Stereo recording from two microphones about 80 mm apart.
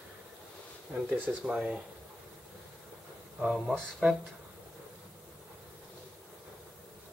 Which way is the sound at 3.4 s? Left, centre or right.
Centre.